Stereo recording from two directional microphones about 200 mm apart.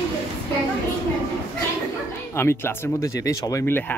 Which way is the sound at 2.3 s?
10° left (ahead or behind).